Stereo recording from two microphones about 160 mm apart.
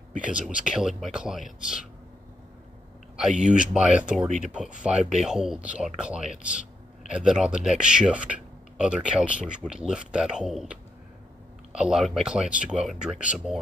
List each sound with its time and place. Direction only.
0.2 s speech: 5° right (ahead or behind)
3.3 s speech: 50° right (ahead or behind)
3.5 s a man's voice: 5° right (ahead or behind)